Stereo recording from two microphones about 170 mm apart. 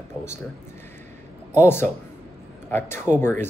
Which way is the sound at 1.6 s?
15° left (ahead or behind).